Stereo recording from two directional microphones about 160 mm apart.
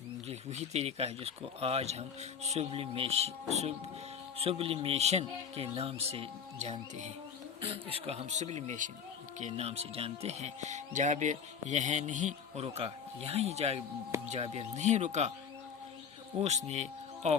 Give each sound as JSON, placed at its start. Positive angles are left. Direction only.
{"t": 0.3, "sound": "speech", "side_deg": -45}
{"t": 16.4, "sound": "speech", "side_deg": -45}